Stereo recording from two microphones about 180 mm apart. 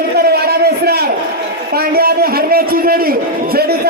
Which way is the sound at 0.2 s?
60° right (ahead or behind).